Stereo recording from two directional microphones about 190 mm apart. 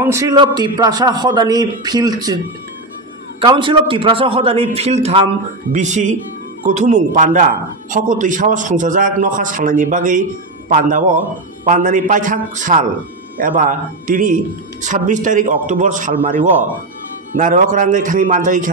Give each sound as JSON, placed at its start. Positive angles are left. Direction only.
{"t": 0.0, "sound": "a man's voice", "side_deg": -15}
{"t": 3.3, "sound": "a man's voice", "side_deg": -25}